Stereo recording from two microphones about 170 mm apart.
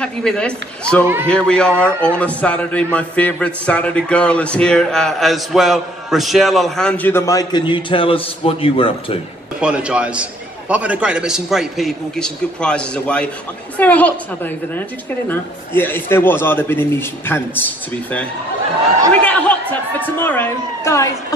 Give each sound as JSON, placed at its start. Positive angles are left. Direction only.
{"t": 0.0, "sound": "a man's voice", "side_deg": 5}
{"t": 9.6, "sound": "a man's voice", "side_deg": -5}
{"t": 19.2, "sound": "speech", "side_deg": 10}